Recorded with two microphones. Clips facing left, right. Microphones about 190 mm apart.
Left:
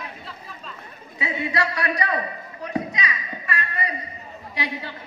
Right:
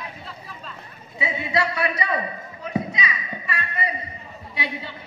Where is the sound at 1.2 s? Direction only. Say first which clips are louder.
Right 1 dB; 25° right (ahead or behind).